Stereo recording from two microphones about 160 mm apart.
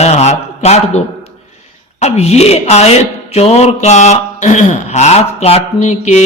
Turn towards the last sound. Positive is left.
turn(degrees=45)  # may be behind; listen again after turning